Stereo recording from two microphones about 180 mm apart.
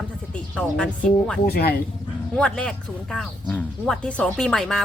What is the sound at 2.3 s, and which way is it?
Speech, 5° left (ahead or behind).